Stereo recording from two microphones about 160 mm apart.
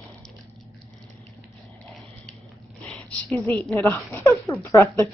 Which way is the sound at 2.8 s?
10° left (ahead or behind).